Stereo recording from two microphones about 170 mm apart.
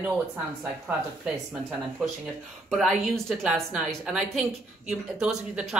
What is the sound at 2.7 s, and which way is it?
Speech, centre (ahead or behind).